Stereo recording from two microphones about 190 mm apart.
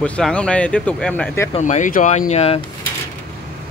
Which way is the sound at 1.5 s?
40° left (ahead or behind).